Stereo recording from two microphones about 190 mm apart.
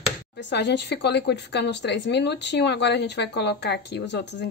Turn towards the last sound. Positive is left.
turn(degrees=65)  # may be behind; listen again after turning